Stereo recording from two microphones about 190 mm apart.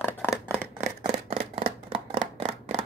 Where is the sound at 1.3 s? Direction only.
30° right (ahead or behind).